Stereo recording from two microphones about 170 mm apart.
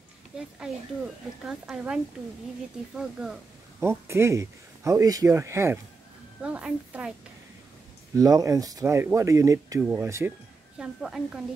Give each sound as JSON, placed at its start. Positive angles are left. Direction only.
{"t": 1.4, "sound": "a woman's voice", "side_deg": -5}
{"t": 3.0, "sound": "a woman's voice", "side_deg": -5}
{"t": 3.8, "sound": "speech", "side_deg": -15}
{"t": 8.2, "sound": "a woman's voice", "side_deg": -20}